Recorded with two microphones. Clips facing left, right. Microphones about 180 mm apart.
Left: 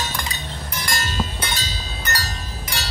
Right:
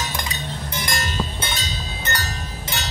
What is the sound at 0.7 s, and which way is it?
Chink, 25° right (ahead or behind).